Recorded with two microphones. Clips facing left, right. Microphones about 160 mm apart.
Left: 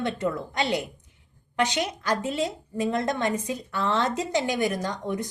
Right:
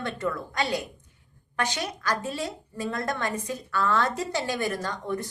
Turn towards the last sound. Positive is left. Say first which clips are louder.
# left 2 dB
turn(degrees=15)  # may be behind; listen again after turning